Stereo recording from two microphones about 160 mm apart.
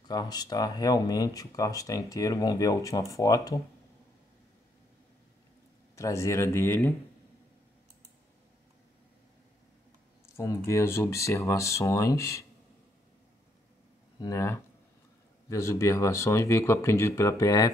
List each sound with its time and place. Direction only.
0.1 s speech: 25° left (ahead or behind)
5.9 s speech: 20° left (ahead or behind)
10.2 s speech: 20° left (ahead or behind)
14.2 s speech: 15° left (ahead or behind)